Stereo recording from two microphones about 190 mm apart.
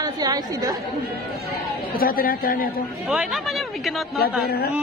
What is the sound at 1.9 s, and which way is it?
Speech, 50° left (ahead or behind).